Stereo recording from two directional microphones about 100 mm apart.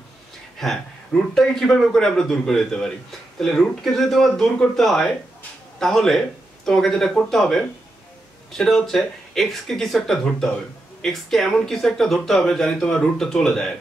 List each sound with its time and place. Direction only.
0.6 s a man's voice: 5° left (ahead or behind)